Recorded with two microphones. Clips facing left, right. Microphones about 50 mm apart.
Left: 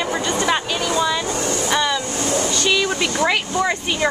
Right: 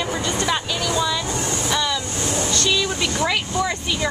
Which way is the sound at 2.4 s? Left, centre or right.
Centre.